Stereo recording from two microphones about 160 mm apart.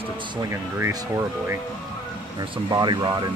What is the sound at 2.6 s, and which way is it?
Speech, 25° right (ahead or behind).